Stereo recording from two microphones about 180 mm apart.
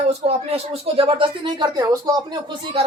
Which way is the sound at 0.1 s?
35° right (ahead or behind).